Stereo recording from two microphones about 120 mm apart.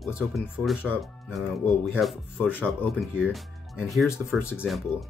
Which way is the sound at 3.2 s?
5° right (ahead or behind).